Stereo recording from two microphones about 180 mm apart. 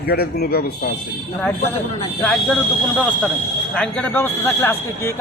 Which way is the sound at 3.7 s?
5° left (ahead or behind).